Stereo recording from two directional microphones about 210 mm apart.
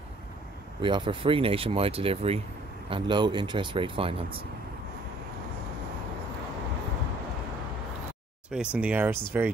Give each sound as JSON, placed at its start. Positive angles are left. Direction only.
{"t": 0.7, "sound": "speech", "side_deg": -25}
{"t": 8.5, "sound": "speech", "side_deg": -5}